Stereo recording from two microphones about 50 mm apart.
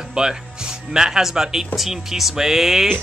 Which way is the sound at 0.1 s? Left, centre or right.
Centre.